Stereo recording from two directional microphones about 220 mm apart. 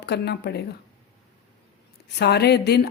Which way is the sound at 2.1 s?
50° left (ahead or behind).